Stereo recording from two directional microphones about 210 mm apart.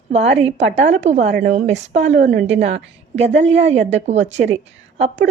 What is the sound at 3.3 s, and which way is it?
Speech, 60° right (ahead or behind).